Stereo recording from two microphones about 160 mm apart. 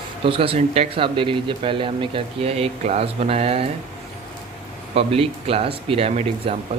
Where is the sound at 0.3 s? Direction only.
35° right (ahead or behind).